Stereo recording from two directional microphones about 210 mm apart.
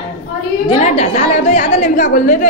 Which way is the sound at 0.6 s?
25° left (ahead or behind).